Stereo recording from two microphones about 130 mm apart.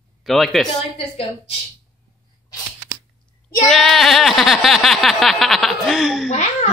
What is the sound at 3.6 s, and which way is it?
Speech, centre (ahead or behind).